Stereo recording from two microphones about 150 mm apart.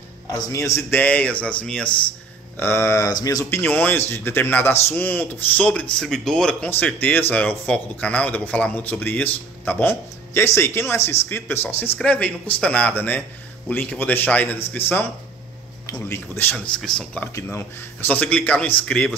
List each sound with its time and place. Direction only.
0.3 s speech: 20° left (ahead or behind)
15.9 s speech: 15° left (ahead or behind)